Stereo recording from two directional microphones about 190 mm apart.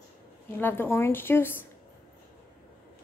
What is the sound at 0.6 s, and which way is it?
Speech, 10° left (ahead or behind).